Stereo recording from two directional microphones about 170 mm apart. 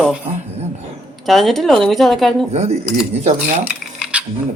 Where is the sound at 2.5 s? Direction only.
40° right (ahead or behind).